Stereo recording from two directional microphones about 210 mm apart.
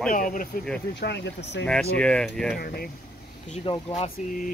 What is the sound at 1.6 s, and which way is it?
Speech, 5° left (ahead or behind).